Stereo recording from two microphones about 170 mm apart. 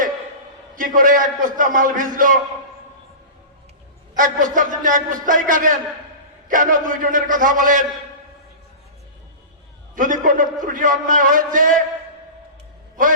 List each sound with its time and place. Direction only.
0.8 s a man's voice: 50° right (ahead or behind)
4.1 s a man's voice: 50° right (ahead or behind)
9.9 s a man's voice: 50° right (ahead or behind)